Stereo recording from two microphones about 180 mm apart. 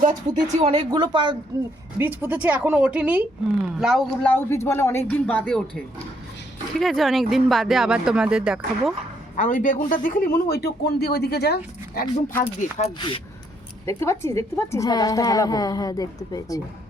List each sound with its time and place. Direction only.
0.0 s speech: 40° right (ahead or behind)
2.0 s a woman's voice: 10° right (ahead or behind); by 5.6 s 5° left (ahead or behind)
6.7 s speech: centre (ahead or behind)
9.3 s a man's voice: 45° left (ahead or behind); by 12.0 s 65° left (ahead or behind)
12.4 s speech: 40° left (ahead or behind)
13.0 s a woman's voice: 30° left (ahead or behind)
13.8 s a woman's voice: 15° left (ahead or behind)